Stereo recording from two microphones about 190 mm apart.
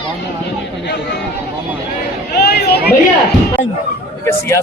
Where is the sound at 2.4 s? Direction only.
55° left (ahead or behind).